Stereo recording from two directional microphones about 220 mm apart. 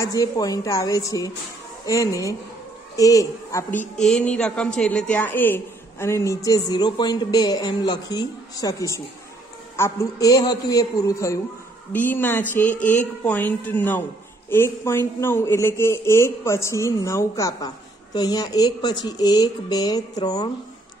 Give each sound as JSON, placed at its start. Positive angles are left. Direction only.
{"t": 0.0, "sound": "a man's voice", "side_deg": 15}
{"t": 3.9, "sound": "a man's voice", "side_deg": 5}